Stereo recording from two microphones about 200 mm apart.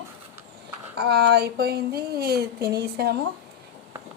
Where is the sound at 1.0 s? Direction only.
55° right (ahead or behind).